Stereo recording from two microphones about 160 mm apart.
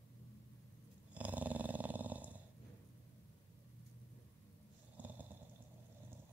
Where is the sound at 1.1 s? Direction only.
10° right (ahead or behind).